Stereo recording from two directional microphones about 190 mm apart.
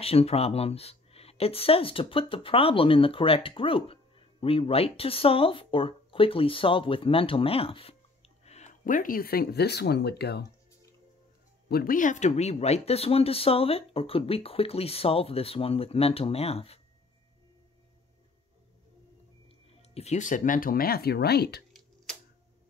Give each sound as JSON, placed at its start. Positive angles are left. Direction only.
{"t": 0.0, "sound": "speech", "side_deg": 30}
{"t": 11.7, "sound": "speech", "side_deg": 50}
{"t": 19.9, "sound": "speech", "side_deg": 35}